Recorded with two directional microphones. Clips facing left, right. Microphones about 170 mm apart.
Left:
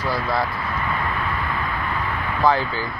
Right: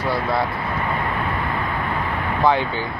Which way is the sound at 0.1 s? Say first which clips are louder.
Right 2 dB; 25° right (ahead or behind).